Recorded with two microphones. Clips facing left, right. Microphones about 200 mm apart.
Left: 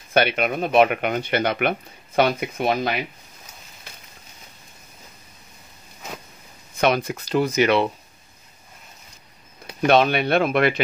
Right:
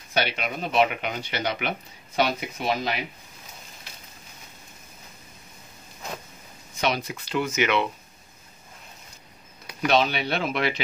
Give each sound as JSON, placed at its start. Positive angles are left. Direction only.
{"t": 0.1, "sound": "speech", "side_deg": 55}
{"t": 6.8, "sound": "speech", "side_deg": 50}
{"t": 9.8, "sound": "speech", "side_deg": 55}